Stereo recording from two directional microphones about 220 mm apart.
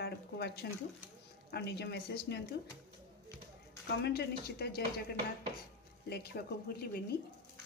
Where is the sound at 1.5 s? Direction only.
50° left (ahead or behind).